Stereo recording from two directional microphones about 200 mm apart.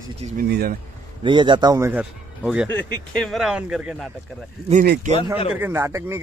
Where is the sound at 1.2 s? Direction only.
25° right (ahead or behind).